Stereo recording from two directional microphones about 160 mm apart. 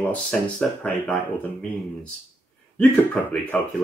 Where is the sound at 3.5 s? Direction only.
5° left (ahead or behind).